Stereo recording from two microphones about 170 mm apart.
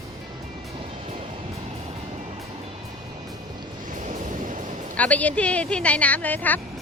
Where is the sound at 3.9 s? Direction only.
45° right (ahead or behind).